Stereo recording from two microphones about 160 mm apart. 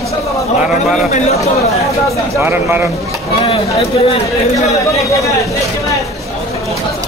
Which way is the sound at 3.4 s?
35° left (ahead or behind).